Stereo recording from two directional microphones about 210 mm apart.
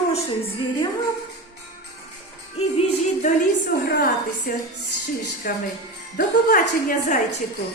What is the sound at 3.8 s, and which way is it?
Speech, 45° left (ahead or behind).